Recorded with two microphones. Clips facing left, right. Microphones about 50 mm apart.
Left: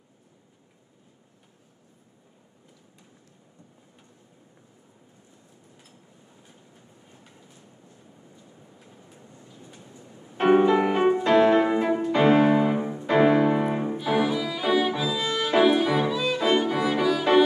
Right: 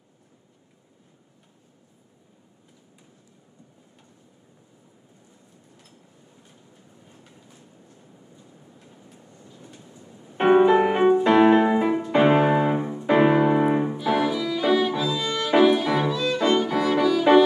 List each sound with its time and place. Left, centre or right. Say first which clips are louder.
10.3 s music: right 2 dB; centre
13.9 s violin: right 1 dB; centre